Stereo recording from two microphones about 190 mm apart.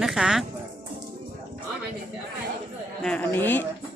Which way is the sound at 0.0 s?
Centre (ahead or behind).